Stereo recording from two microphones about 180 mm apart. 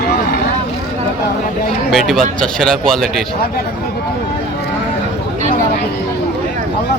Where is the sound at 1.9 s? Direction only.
Centre (ahead or behind).